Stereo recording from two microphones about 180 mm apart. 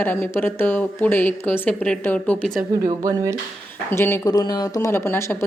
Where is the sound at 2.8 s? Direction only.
20° right (ahead or behind).